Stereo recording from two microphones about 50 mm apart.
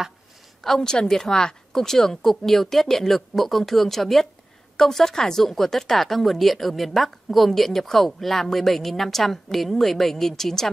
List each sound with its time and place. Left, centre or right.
0.6 s a woman's voice: centre